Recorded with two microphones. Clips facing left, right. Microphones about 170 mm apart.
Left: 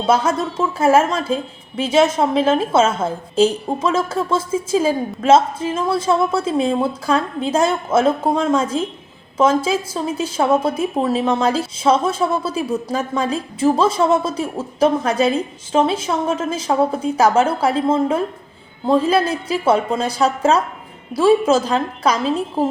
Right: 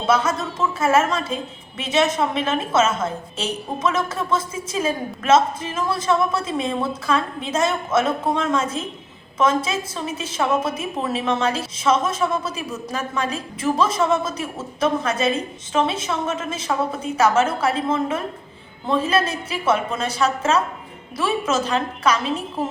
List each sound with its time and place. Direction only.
0.1 s a woman's voice: 30° left (ahead or behind)
19.6 s a woman's voice: 30° left (ahead or behind)